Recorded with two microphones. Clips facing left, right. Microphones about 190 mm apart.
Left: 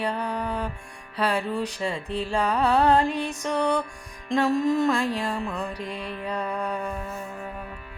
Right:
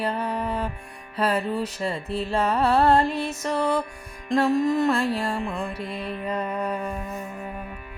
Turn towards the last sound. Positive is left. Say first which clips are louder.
# right 1 dB
turn(degrees=-5)  # may be behind; listen again after turning